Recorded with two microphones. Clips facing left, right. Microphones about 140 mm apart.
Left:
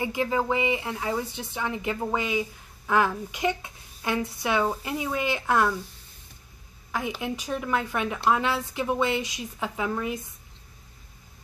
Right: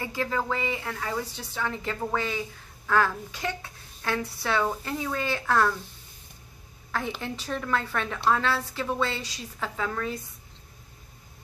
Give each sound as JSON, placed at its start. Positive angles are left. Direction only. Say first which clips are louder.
{"t": 0.0, "sound": "a woman's voice", "louder": "left 3 dB", "side_deg": 15}
{"t": 6.9, "sound": "a woman's voice", "louder": "left 2 dB", "side_deg": 10}